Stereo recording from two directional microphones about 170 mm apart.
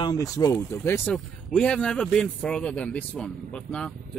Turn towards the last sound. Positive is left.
turn(degrees=5)  # may be behind; listen again after turning